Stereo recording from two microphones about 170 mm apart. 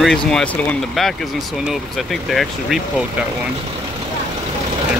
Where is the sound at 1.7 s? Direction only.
Centre (ahead or behind).